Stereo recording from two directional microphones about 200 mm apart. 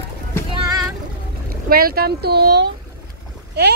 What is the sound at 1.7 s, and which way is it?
Speech, 50° right (ahead or behind).